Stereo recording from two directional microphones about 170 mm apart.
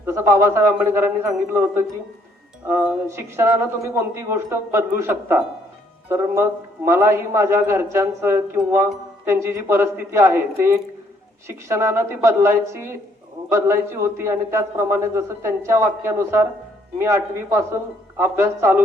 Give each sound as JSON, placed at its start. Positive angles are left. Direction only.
{"t": 0.0, "sound": "a man's voice", "side_deg": -15}
{"t": 3.1, "sound": "a man's voice", "side_deg": -15}